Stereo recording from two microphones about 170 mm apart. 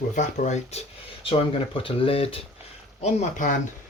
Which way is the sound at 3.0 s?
45° left (ahead or behind).